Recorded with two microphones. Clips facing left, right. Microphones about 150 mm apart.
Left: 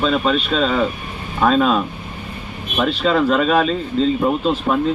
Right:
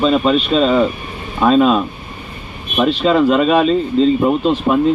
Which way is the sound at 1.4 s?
10° right (ahead or behind).